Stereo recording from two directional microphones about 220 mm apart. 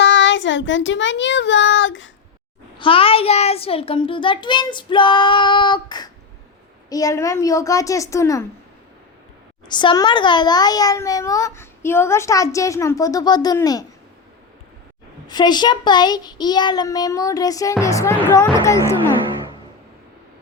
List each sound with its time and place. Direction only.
0.0 s child singing: 55° left (ahead or behind)
2.7 s a child's voice: 25° left (ahead or behind)
9.6 s a child's voice: 20° left (ahead or behind)
15.3 s a child's voice: 20° left (ahead or behind)